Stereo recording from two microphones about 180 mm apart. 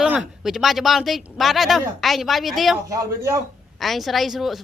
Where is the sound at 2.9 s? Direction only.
15° right (ahead or behind).